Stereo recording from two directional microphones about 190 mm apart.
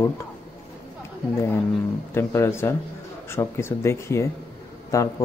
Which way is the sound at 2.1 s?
15° left (ahead or behind).